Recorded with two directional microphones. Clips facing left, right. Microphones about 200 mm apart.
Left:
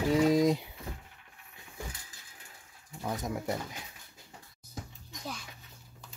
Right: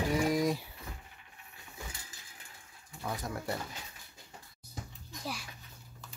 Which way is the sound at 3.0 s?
20° left (ahead or behind).